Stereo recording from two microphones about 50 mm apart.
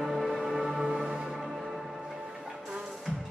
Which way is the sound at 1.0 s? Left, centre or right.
Centre.